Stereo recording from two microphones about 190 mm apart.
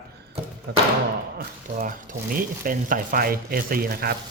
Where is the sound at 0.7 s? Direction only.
65° right (ahead or behind).